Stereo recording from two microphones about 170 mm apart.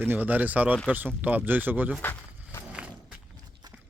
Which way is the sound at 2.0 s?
15° left (ahead or behind).